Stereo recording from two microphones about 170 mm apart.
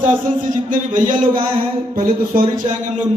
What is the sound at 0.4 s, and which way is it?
A man's voice, 50° right (ahead or behind).